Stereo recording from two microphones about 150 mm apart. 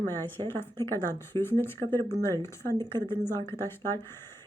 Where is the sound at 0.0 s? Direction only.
15° left (ahead or behind).